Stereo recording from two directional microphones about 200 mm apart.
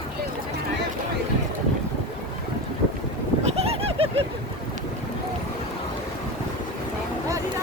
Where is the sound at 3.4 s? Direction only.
30° right (ahead or behind).